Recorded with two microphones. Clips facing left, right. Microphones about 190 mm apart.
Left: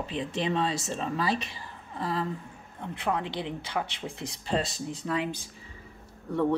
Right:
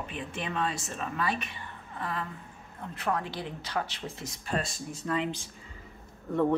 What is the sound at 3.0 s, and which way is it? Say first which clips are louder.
A woman's voice: left 1 dB; 15° left (ahead or behind).